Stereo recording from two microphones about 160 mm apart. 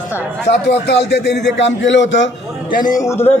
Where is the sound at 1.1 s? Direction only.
90° left.